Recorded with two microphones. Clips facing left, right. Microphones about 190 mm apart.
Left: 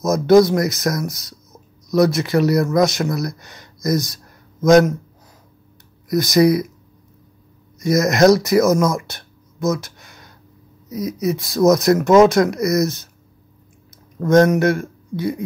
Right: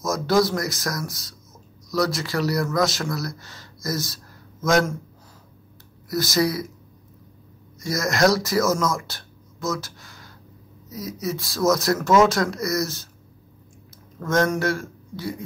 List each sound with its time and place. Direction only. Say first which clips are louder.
0.0 s speech: left 8 dB; 20° left (ahead or behind)
6.0 s speech: left 8 dB; 20° left (ahead or behind)
7.8 s speech: left 7 dB; 20° left (ahead or behind)
14.2 s a man's voice: left 8 dB; 20° left (ahead or behind)